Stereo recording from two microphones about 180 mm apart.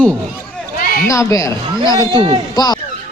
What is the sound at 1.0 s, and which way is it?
Speech, 15° left (ahead or behind).